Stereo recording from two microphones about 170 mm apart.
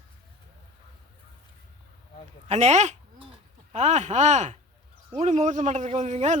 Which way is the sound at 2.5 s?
40° right (ahead or behind).